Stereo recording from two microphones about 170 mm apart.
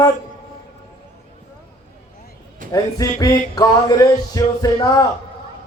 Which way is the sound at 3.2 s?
20° left (ahead or behind).